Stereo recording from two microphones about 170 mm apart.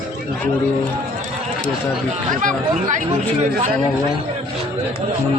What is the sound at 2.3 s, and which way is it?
Speech, 50° right (ahead or behind).